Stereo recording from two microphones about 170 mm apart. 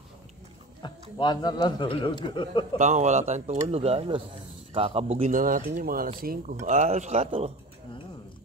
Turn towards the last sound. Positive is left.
turn(degrees=-40)  # may be behind; listen again after turning